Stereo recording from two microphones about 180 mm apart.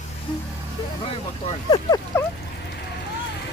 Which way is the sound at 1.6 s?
20° left (ahead or behind).